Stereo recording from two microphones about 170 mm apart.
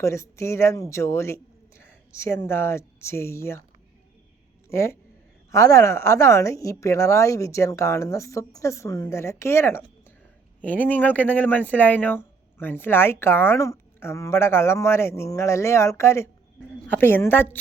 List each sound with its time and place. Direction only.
0.0 s a man's voice: 15° left (ahead or behind)
4.7 s speech: 15° left (ahead or behind)